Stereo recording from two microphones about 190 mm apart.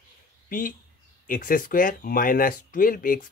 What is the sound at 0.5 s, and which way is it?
Speech, 50° left (ahead or behind).